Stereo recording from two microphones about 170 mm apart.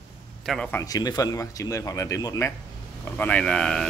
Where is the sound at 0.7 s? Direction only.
20° left (ahead or behind).